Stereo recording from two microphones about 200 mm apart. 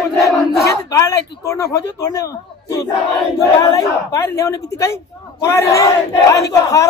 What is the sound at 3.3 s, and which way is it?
Speech, 15° left (ahead or behind).